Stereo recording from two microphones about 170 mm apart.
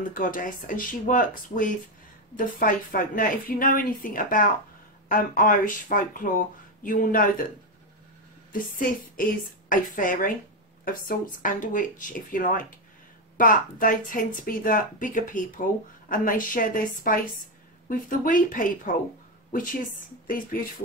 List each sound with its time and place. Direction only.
0.1 s a woman's voice: 55° left (ahead or behind)
8.5 s a woman's voice: 55° left (ahead or behind)